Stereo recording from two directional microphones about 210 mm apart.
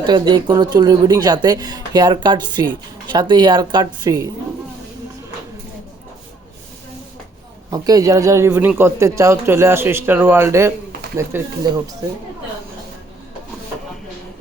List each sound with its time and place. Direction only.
0.0 s speech: 20° right (ahead or behind)
7.7 s speech: 15° right (ahead or behind)